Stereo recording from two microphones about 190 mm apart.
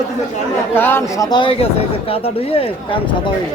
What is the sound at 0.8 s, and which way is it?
Speech, 10° left (ahead or behind).